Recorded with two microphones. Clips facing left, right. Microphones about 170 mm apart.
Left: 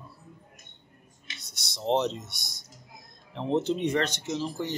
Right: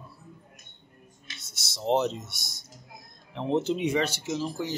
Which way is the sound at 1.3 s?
5° right (ahead or behind).